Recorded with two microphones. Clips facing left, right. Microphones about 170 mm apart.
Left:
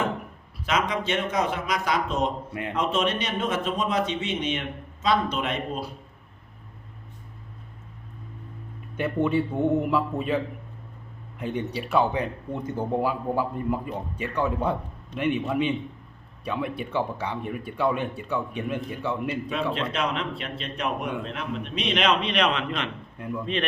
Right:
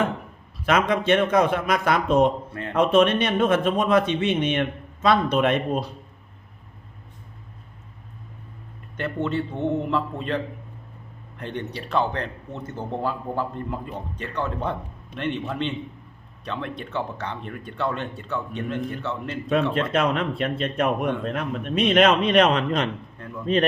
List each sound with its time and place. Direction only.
0.6 s a man's voice: 55° right (ahead or behind)
2.5 s a man's voice: 15° left (ahead or behind)
2.7 s a man's voice: 55° right (ahead or behind)
9.0 s a man's voice: 10° left (ahead or behind)
19.7 s a man's voice: 50° right (ahead or behind)
23.1 s speech: 10° left (ahead or behind)